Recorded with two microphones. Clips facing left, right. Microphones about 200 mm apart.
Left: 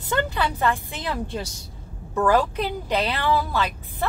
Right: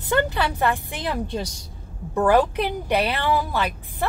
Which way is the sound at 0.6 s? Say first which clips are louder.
Right 1 dB; 15° right (ahead or behind).